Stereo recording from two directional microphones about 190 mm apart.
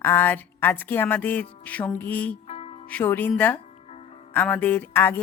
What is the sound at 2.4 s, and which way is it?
Music, 30° left (ahead or behind).